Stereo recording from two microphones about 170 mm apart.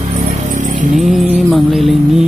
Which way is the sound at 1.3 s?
Centre (ahead or behind).